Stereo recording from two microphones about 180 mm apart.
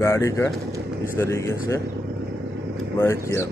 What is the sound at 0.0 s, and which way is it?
Speech, 15° left (ahead or behind).